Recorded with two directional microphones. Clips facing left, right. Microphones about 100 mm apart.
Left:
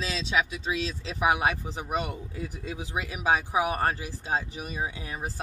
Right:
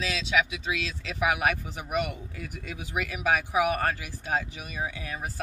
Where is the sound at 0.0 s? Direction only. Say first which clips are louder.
Right 1 dB; 35° left (ahead or behind).